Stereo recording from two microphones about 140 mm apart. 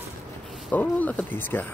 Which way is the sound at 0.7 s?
10° left (ahead or behind).